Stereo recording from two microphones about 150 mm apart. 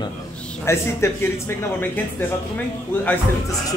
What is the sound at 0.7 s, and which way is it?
Speech, 20° left (ahead or behind).